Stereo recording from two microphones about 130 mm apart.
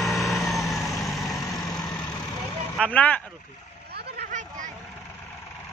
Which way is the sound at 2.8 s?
10° left (ahead or behind).